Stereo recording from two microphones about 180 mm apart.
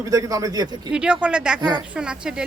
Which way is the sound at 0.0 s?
15° right (ahead or behind).